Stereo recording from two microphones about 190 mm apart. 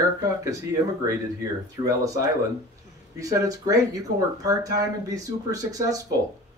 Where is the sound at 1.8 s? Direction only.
15° right (ahead or behind).